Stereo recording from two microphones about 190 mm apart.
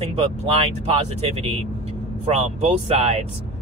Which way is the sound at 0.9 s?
30° right (ahead or behind).